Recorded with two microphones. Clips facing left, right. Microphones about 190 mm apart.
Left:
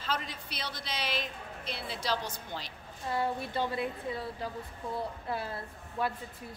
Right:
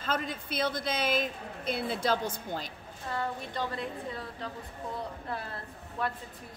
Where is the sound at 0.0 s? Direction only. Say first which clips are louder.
Right 3 dB; 50° right (ahead or behind).